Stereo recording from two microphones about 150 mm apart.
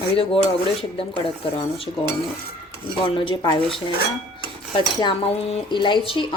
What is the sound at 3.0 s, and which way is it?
Speech, 35° left (ahead or behind).